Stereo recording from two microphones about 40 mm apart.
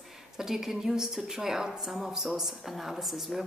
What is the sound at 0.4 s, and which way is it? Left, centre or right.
A woman's voice, centre.